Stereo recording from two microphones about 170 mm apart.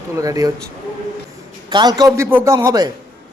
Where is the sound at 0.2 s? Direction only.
20° right (ahead or behind).